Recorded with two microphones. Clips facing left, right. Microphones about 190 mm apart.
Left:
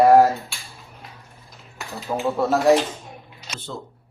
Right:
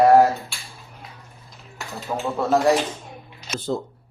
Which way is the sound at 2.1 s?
5° left (ahead or behind).